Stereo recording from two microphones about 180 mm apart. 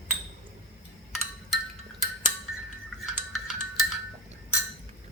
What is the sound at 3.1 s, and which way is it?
Music, centre (ahead or behind).